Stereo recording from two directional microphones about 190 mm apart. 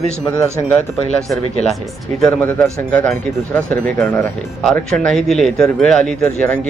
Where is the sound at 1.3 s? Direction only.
Centre (ahead or behind).